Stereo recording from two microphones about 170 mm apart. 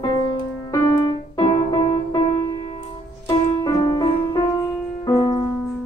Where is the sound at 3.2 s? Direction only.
25° left (ahead or behind).